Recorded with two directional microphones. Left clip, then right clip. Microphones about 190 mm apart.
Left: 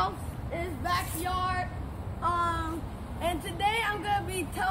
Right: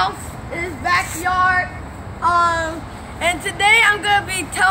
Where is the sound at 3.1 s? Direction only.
5° right (ahead or behind).